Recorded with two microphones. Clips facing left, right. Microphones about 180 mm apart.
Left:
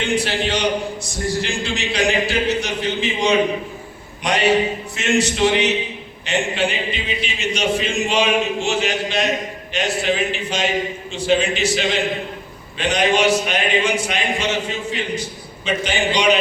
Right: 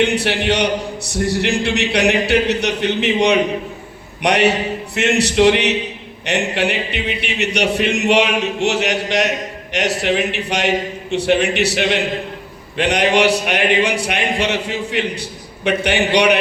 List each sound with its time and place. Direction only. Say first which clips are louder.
0.0 s a man's voice: right 4 dB; 65° right (ahead or behind)